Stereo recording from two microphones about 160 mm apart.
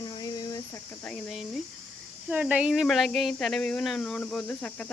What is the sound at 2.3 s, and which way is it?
Speech, 10° right (ahead or behind).